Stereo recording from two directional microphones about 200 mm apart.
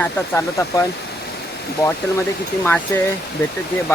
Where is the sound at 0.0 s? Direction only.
15° left (ahead or behind).